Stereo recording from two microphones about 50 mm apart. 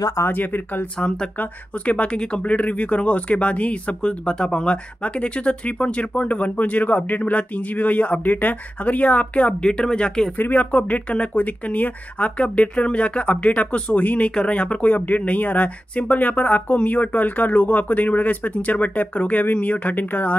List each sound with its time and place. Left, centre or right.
0.3 s speech: left
0.9 s speech: centre
10.3 s speech: left
14.3 s speech: centre
14.6 s speech: left